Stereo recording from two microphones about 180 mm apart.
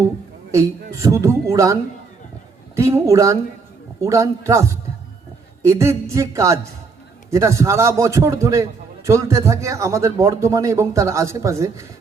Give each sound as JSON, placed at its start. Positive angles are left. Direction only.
{"t": 0.5, "sound": "speech", "side_deg": -20}